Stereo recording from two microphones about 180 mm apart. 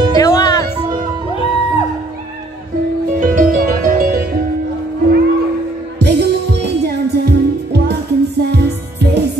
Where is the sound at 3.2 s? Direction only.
50° right (ahead or behind).